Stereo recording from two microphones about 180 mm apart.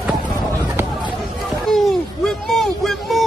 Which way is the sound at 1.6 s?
Centre (ahead or behind).